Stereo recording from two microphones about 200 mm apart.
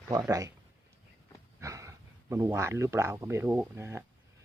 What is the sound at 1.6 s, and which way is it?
Speech, 15° right (ahead or behind).